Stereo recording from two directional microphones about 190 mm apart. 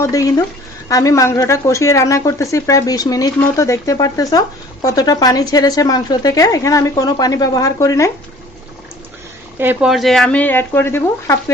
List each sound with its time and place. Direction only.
0.0 s speech: 20° left (ahead or behind)
9.6 s speech: 5° right (ahead or behind); by 11.5 s 15° left (ahead or behind)